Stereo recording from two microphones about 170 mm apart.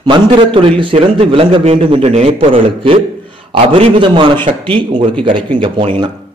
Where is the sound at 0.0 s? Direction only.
30° right (ahead or behind).